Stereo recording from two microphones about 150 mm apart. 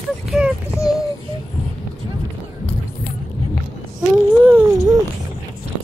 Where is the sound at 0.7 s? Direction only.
20° left (ahead or behind).